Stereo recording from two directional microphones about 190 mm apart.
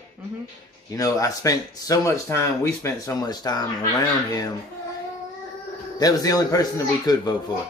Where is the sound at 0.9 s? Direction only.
20° left (ahead or behind).